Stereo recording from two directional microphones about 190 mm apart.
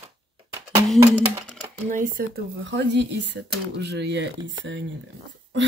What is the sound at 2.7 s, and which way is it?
Speech, 65° right (ahead or behind).